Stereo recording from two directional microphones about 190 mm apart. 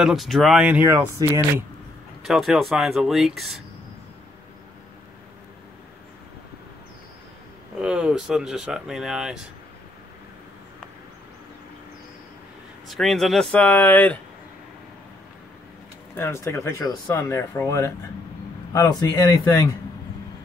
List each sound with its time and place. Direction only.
0.0 s speech: centre (ahead or behind)
2.2 s speech: centre (ahead or behind)
7.8 s speech: 5° right (ahead or behind)
12.8 s speech: centre (ahead or behind)
16.2 s speech: 15° left (ahead or behind)